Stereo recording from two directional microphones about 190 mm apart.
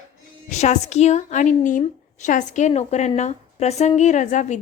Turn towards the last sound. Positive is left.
turn(degrees=40)  # may be behind; listen again after turning